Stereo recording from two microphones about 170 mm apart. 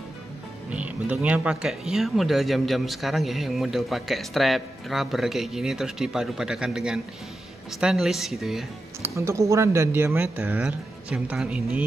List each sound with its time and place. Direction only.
0.7 s speech: 10° right (ahead or behind)
9.0 s speech: 15° right (ahead or behind)